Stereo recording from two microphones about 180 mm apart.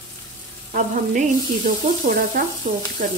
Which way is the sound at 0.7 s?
50° right (ahead or behind).